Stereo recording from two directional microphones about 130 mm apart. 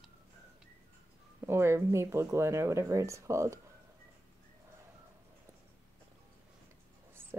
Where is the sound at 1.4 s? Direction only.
20° right (ahead or behind).